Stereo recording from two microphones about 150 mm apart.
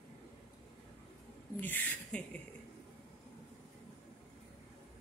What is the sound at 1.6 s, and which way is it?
Speech, 10° left (ahead or behind).